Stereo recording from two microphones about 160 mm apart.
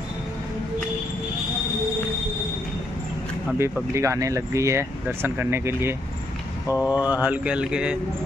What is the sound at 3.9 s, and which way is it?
Speech, 20° right (ahead or behind).